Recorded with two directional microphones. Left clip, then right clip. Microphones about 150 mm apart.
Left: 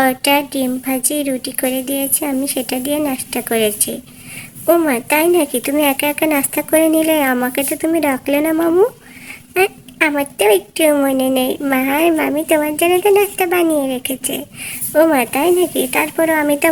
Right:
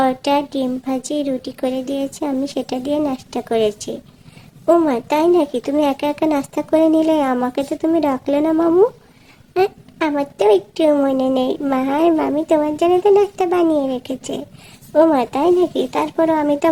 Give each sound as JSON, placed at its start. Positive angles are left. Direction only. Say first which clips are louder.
{"t": 0.0, "sound": "speech", "louder": "left 2 dB", "side_deg": 5}